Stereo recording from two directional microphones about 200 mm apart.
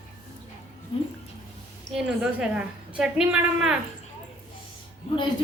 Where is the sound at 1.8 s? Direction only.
5° right (ahead or behind).